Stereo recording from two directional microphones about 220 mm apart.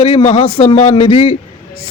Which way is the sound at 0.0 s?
25° left (ahead or behind).